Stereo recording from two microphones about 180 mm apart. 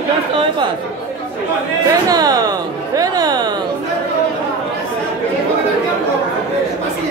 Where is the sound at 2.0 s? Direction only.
20° right (ahead or behind).